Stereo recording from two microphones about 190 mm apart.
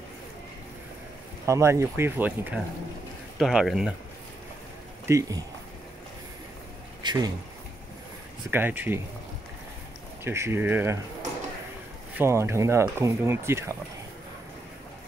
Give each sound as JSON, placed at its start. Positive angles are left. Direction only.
{"t": 1.4, "sound": "speech", "side_deg": -15}
{"t": 5.0, "sound": "speech", "side_deg": -15}
{"t": 7.0, "sound": "a sound", "side_deg": -25}
{"t": 8.5, "sound": "speech", "side_deg": -10}
{"t": 10.2, "sound": "speech", "side_deg": -15}
{"t": 12.2, "sound": "speech", "side_deg": -15}